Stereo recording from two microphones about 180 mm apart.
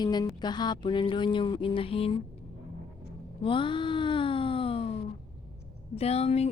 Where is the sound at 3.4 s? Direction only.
30° left (ahead or behind).